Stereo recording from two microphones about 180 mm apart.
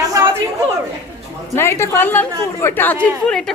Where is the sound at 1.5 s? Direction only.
15° left (ahead or behind).